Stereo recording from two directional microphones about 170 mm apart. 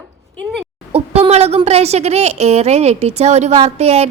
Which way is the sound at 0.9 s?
35° right (ahead or behind).